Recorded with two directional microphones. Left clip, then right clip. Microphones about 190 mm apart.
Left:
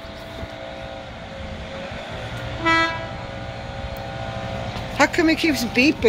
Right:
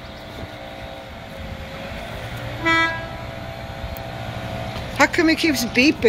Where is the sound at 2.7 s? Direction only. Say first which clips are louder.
Even; 50° left (ahead or behind).